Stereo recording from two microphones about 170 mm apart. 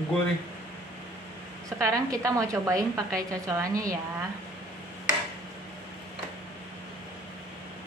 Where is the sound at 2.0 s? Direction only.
20° right (ahead or behind).